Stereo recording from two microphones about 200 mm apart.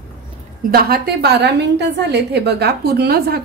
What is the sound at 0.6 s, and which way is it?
A woman's voice, 50° right (ahead or behind).